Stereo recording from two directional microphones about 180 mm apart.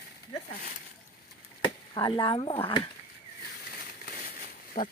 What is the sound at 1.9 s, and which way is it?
Speech, 25° left (ahead or behind).